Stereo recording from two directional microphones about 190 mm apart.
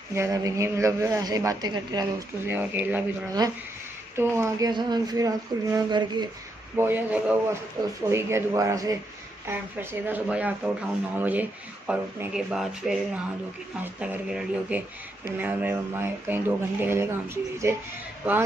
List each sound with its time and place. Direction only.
0.1 s a woman's voice: 15° right (ahead or behind)
3.4 s speech: 20° right (ahead or behind)
6.8 s a woman's voice: 10° right (ahead or behind)
7.8 s a woman's voice: 20° right (ahead or behind)